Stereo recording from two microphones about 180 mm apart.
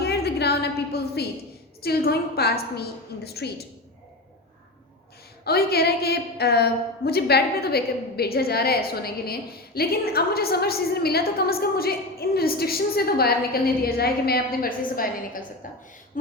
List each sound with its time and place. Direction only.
0.0 s a sound: 65° left (ahead or behind)
1.8 s a woman's voice: 60° left (ahead or behind)
5.5 s a woman's voice: 60° left (ahead or behind)